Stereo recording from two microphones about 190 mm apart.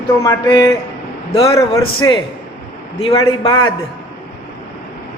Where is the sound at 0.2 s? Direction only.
15° left (ahead or behind).